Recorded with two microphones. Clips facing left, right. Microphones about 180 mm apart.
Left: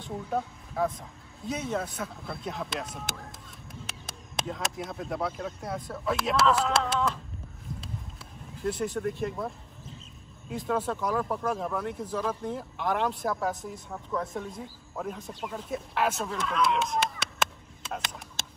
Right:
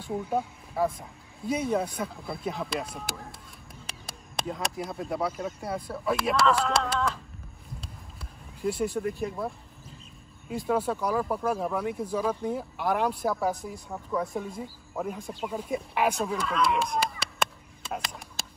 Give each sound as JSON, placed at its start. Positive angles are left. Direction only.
{"t": 0.0, "sound": "speech", "side_deg": -10}
{"t": 8.6, "sound": "speech", "side_deg": -5}
{"t": 10.5, "sound": "speech", "side_deg": -5}
{"t": 16.3, "sound": "a sound", "side_deg": 0}